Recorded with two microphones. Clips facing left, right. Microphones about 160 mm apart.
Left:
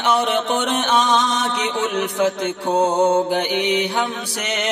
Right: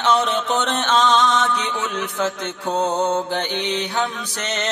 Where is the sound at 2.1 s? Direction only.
15° left (ahead or behind).